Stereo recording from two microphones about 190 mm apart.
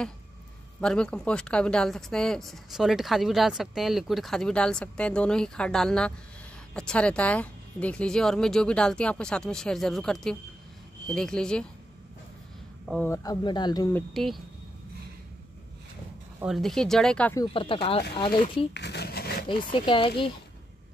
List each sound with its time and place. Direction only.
0.7 s a woman's voice: 5° left (ahead or behind)
12.8 s speech: centre (ahead or behind)
13.1 s speech: 20° left (ahead or behind)
13.9 s a woman's voice: centre (ahead or behind)
16.4 s a woman's voice: centre (ahead or behind)
17.4 s speech: 25° left (ahead or behind)
18.7 s a sound: 60° left (ahead or behind)
19.4 s speech: 25° left (ahead or behind)